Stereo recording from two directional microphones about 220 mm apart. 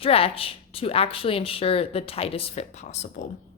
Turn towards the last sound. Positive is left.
turn(degrees=30)  # may be behind; listen again after turning